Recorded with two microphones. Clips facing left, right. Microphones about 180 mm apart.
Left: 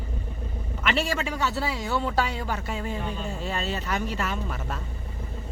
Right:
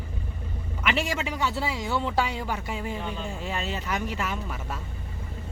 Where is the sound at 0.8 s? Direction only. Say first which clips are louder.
Left 1 dB; 15° right (ahead or behind).